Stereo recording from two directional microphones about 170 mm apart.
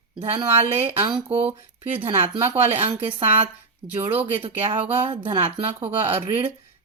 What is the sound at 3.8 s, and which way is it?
Speech, 30° right (ahead or behind).